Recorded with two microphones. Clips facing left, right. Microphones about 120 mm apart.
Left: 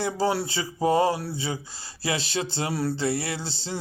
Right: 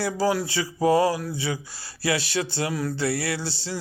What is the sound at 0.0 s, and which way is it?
Speech, 25° left (ahead or behind).